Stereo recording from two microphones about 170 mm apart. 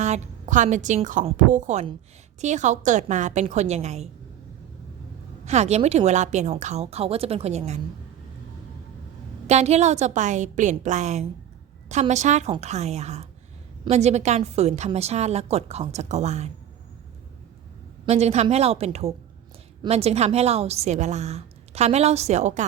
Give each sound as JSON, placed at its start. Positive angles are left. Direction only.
{"t": 0.0, "sound": "a woman's voice", "side_deg": -45}
{"t": 5.5, "sound": "a woman's voice", "side_deg": -40}
{"t": 9.5, "sound": "a woman's voice", "side_deg": -40}
{"t": 18.0, "sound": "a woman's voice", "side_deg": -40}